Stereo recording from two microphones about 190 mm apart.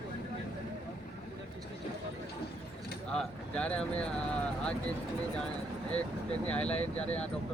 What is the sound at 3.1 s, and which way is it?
Speech, 5° left (ahead or behind).